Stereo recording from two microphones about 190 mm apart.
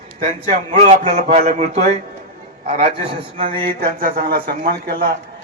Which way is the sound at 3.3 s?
30° right (ahead or behind).